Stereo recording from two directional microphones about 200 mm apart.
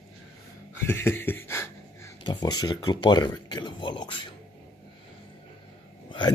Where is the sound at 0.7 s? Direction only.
10° left (ahead or behind).